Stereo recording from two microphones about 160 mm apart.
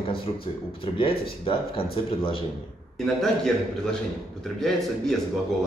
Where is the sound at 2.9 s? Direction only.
Centre (ahead or behind).